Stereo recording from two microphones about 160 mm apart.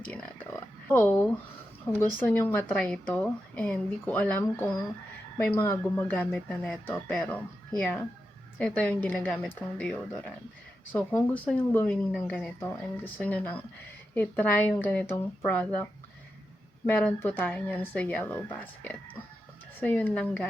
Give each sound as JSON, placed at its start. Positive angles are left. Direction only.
{"t": 0.5, "sound": "a sound", "side_deg": 10}
{"t": 2.1, "sound": "speech", "side_deg": 10}
{"t": 16.9, "sound": "speech", "side_deg": 10}